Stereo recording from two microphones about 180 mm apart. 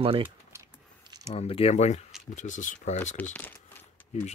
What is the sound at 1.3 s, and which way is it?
Speech, 35° left (ahead or behind).